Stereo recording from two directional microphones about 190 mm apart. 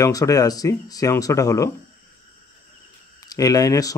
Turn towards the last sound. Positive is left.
turn(degrees=20)  # may be behind; listen again after turning